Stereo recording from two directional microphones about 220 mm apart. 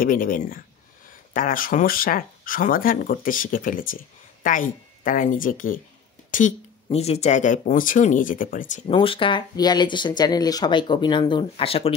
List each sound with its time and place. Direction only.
0.0 s speech: 40° left (ahead or behind)
8.9 s speech: 25° left (ahead or behind)